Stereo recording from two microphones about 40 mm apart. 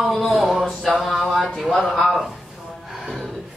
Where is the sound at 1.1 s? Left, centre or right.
Centre.